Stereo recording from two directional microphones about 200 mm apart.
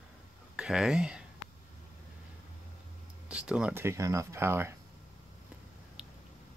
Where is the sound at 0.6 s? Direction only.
Centre (ahead or behind).